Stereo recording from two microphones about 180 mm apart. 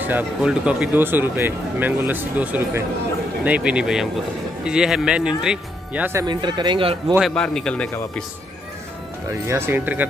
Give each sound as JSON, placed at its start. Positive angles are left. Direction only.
{"t": 0.0, "sound": "speech", "side_deg": -5}
{"t": 6.2, "sound": "speech", "side_deg": -25}
{"t": 7.2, "sound": "speech", "side_deg": 5}
{"t": 9.3, "sound": "speech", "side_deg": -15}